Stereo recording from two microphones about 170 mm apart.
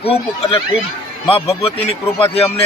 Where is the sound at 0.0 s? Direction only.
35° left (ahead or behind).